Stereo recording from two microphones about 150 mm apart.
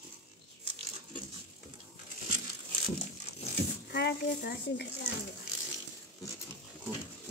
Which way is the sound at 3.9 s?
90° left.